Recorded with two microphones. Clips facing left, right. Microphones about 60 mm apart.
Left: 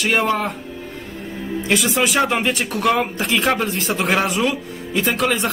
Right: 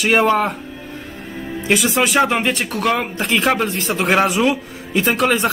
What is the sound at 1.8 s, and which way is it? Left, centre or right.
Speech, centre.